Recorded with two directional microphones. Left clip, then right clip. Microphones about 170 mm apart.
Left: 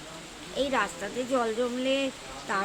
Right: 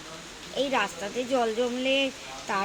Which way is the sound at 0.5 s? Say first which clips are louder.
Right 1 dB; 10° right (ahead or behind).